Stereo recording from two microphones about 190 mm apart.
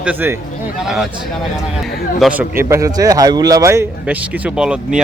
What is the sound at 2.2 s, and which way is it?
A man's voice, 10° right (ahead or behind).